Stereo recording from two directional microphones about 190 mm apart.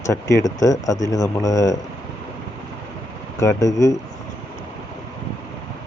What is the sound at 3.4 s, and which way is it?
Speech, 15° left (ahead or behind).